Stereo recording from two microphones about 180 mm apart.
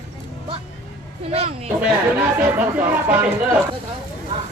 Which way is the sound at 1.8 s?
10° right (ahead or behind).